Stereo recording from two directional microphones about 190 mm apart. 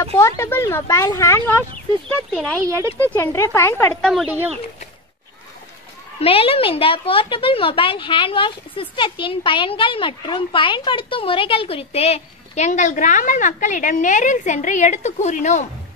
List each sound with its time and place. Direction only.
0.0 s speech: 15° left (ahead or behind)
2.0 s speech: 5° left (ahead or behind)
6.1 s speech: 30° left (ahead or behind)